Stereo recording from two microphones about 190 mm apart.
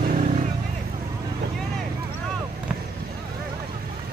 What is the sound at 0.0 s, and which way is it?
Vehicle, 45° right (ahead or behind).